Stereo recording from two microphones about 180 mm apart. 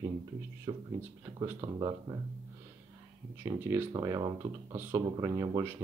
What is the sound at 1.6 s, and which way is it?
Speech, 35° right (ahead or behind).